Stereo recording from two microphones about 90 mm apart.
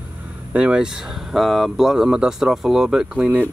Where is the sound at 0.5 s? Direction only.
10° right (ahead or behind).